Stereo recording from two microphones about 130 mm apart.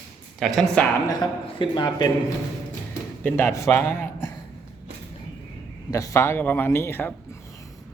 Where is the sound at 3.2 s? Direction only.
20° left (ahead or behind).